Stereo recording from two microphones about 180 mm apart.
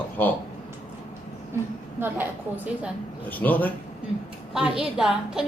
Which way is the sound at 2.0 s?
10° right (ahead or behind).